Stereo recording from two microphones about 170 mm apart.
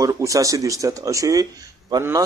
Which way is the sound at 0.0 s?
20° right (ahead or behind).